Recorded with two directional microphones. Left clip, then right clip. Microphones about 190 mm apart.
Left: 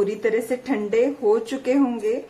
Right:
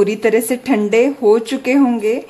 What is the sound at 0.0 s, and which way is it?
A woman's voice, 30° right (ahead or behind).